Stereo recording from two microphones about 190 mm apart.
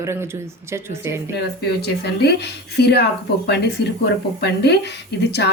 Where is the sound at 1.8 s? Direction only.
60° left (ahead or behind).